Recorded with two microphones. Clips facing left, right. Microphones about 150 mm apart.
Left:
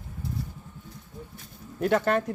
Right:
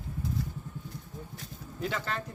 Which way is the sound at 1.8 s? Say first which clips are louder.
Left 11 dB; 55° left (ahead or behind).